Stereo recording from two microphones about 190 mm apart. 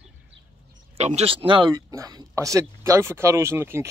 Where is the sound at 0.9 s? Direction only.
35° right (ahead or behind).